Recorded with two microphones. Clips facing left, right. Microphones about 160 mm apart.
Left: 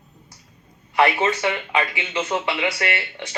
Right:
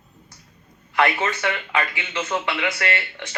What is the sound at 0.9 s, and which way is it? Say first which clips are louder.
A man's voice: left 3 dB; 15° left (ahead or behind).